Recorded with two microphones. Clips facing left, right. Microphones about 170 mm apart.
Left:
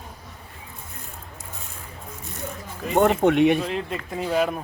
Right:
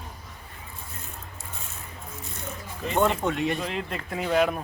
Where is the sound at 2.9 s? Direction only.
55° left (ahead or behind).